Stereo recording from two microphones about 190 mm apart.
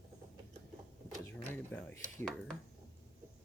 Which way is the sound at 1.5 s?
10° left (ahead or behind).